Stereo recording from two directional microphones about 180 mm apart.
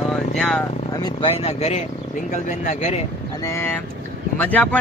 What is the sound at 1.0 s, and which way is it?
Speech, 30° left (ahead or behind).